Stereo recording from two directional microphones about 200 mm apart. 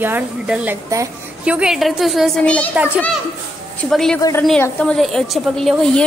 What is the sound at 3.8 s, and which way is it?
A woman's voice, centre (ahead or behind).